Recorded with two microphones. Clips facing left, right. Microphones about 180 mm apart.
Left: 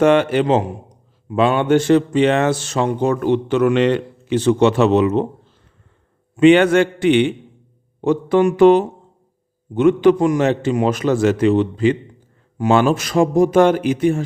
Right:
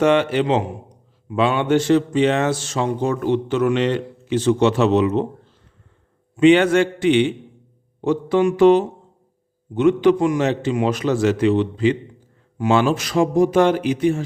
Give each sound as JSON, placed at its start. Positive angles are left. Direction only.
{"t": 0.0, "sound": "a man's voice", "side_deg": 50}
{"t": 6.3, "sound": "a man's voice", "side_deg": 55}